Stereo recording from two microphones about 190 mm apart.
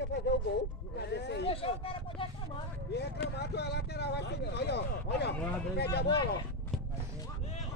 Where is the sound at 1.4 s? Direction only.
30° left (ahead or behind).